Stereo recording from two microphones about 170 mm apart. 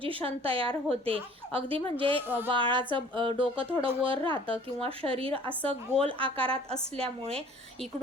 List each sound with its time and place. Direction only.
0.0 s speech: 30° right (ahead or behind)